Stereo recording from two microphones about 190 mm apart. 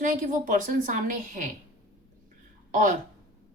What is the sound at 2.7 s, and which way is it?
Speech, 45° right (ahead or behind).